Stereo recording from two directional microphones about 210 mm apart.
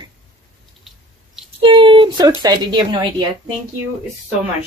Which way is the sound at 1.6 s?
25° right (ahead or behind).